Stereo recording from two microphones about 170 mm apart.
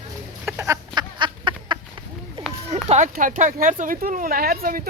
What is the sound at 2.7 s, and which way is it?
Speech, 45° right (ahead or behind).